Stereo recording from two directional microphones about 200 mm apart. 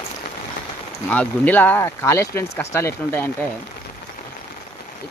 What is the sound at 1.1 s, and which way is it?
Speech, 5° left (ahead or behind).